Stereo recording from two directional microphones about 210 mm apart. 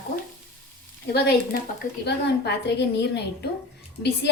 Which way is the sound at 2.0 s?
55° left (ahead or behind).